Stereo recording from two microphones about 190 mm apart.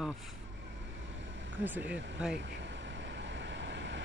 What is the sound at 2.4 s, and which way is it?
Vehicle, 70° right (ahead or behind).